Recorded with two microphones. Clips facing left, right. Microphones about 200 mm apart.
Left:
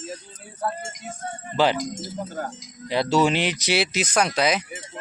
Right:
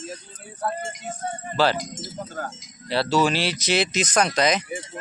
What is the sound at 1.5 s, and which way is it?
Speech, 15° left (ahead or behind).